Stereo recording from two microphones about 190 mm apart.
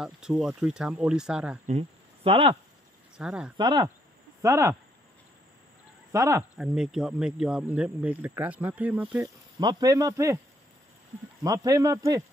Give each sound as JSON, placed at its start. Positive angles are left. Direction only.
{"t": 0.0, "sound": "speech", "side_deg": -5}
{"t": 1.7, "sound": "speech", "side_deg": -30}
{"t": 3.2, "sound": "speech", "side_deg": -5}
{"t": 3.5, "sound": "speech", "side_deg": -25}
{"t": 6.1, "sound": "a man's voice", "side_deg": -15}
{"t": 6.5, "sound": "speech", "side_deg": -5}
{"t": 9.6, "sound": "a man's voice", "side_deg": -20}
{"t": 11.4, "sound": "a man's voice", "side_deg": -20}